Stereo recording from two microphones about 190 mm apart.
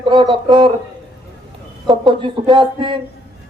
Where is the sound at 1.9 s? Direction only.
25° right (ahead or behind).